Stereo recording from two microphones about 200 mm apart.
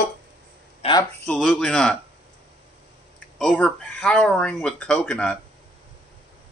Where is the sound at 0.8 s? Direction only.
20° left (ahead or behind).